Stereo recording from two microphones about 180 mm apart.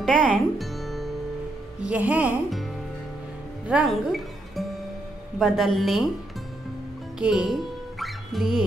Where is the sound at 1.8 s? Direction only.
5° right (ahead or behind).